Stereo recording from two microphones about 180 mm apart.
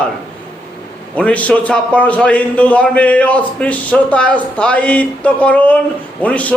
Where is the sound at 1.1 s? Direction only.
10° left (ahead or behind).